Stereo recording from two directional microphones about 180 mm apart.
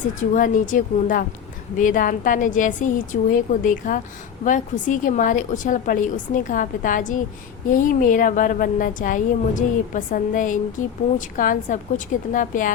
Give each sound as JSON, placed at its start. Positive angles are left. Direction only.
{"t": 0.2, "sound": "a woman's voice", "side_deg": 45}